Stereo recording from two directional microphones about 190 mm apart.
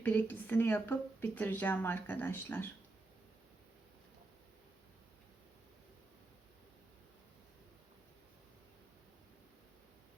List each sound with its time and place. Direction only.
0.0 s speech: 10° left (ahead or behind)